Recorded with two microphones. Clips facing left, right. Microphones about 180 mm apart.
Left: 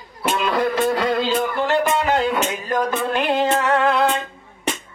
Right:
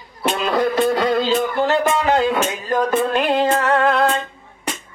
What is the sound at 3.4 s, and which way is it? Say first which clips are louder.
Music: right 1 dB; 25° left (ahead or behind).